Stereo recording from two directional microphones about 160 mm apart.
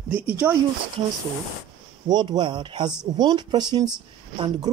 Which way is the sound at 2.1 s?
25° right (ahead or behind).